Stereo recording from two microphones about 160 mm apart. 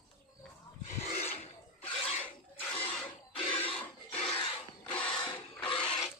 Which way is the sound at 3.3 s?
35° left (ahead or behind).